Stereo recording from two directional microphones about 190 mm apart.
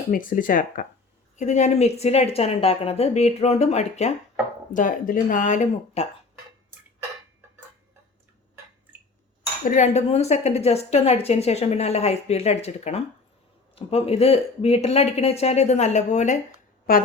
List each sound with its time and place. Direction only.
0.1 s a woman's voice: 45° left (ahead or behind)
9.6 s a woman's voice: 40° left (ahead or behind)
16.9 s speech: 50° left (ahead or behind)